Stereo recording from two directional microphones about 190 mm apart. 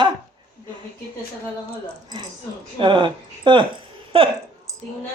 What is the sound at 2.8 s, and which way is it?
Speech, 25° right (ahead or behind).